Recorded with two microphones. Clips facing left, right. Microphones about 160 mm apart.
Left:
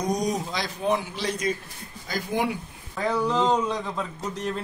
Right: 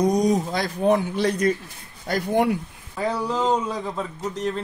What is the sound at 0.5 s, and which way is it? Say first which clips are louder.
Speech: right 5 dB; 50° right (ahead or behind).